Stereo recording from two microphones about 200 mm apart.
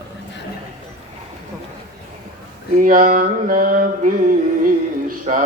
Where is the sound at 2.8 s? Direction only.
40° right (ahead or behind).